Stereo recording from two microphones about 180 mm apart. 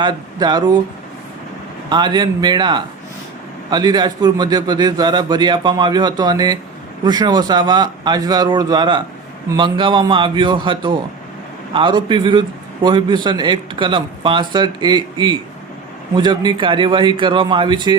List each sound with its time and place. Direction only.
0.0 s a man's voice: 20° right (ahead or behind)
1.9 s a man's voice: 25° right (ahead or behind)